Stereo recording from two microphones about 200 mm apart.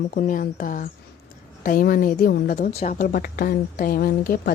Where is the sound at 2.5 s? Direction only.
35° left (ahead or behind).